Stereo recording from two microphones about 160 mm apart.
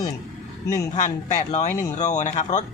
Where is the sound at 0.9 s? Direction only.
50° left (ahead or behind).